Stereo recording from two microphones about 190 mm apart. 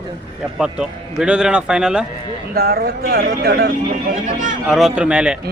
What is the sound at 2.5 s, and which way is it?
Speech, 55° right (ahead or behind).